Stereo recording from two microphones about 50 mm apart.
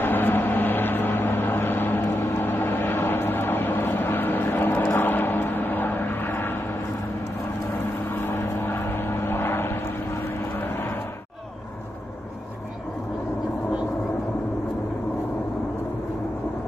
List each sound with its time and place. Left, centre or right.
0.0 s vehicle: left
8.1 s vehicle: left